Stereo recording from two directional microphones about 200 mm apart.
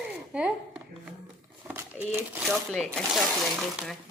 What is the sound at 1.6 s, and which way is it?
Crumpling, 10° right (ahead or behind).